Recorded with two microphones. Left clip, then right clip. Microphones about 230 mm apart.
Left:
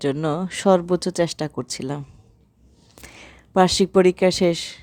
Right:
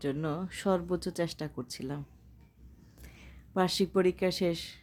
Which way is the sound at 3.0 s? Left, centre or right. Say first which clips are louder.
Left 14 dB; left.